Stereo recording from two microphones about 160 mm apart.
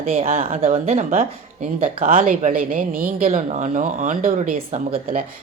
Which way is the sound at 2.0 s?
60° right (ahead or behind).